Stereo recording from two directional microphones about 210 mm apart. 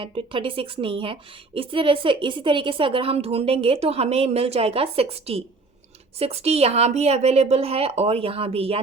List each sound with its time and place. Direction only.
0.0 s a woman's voice: 25° right (ahead or behind)